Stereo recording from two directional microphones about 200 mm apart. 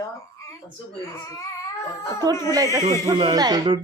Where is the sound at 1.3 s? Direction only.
15° left (ahead or behind).